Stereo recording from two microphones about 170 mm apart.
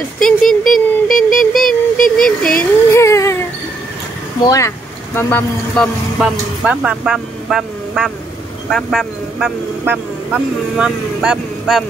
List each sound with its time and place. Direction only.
0.2 s a sound: 5° left (ahead or behind)
2.1 s baby cry: 5° left (ahead or behind)
4.4 s speech: 20° left (ahead or behind)
6.1 s speech: 5° right (ahead or behind)